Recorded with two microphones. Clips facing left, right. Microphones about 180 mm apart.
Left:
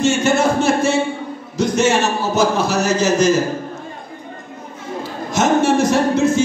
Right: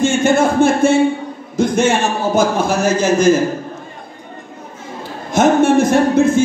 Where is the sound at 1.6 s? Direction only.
55° right (ahead or behind).